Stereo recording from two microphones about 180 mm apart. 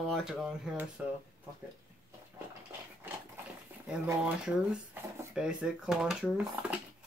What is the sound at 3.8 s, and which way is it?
Speech, 5° right (ahead or behind).